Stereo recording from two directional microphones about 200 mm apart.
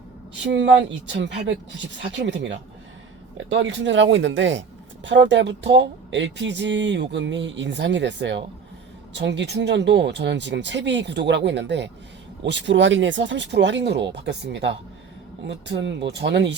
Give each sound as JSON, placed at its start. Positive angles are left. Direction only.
{"t": 0.4, "sound": "speech", "side_deg": -65}